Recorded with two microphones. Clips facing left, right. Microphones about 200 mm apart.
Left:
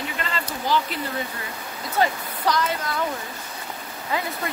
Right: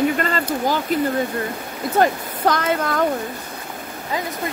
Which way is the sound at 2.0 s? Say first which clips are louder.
Right 5 dB; 55° right (ahead or behind).